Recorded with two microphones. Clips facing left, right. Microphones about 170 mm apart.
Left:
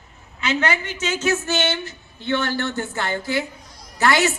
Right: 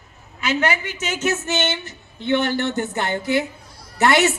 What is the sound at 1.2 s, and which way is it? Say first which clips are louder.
Speech: even; 20° right (ahead or behind).